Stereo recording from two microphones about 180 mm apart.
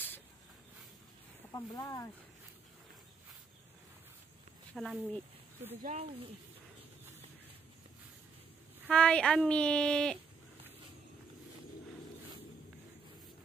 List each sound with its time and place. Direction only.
1.5 s speech: 20° left (ahead or behind)
4.7 s speech: centre (ahead or behind)
5.8 s speech: 45° right (ahead or behind)
8.8 s speech: 5° left (ahead or behind)